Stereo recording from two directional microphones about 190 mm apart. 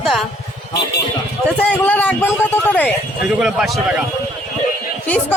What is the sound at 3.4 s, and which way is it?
Speech, 5° right (ahead or behind).